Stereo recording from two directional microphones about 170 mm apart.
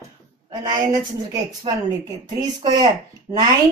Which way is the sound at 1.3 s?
20° right (ahead or behind).